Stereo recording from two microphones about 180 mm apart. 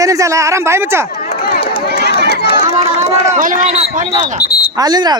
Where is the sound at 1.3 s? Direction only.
60° left (ahead or behind).